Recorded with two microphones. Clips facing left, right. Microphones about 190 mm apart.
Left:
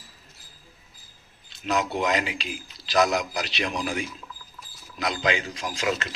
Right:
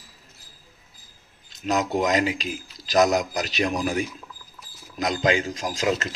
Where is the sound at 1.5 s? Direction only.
40° right (ahead or behind).